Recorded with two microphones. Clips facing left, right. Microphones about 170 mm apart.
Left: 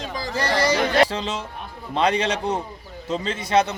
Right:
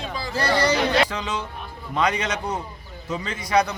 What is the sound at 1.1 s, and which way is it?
A man's voice, 30° left (ahead or behind).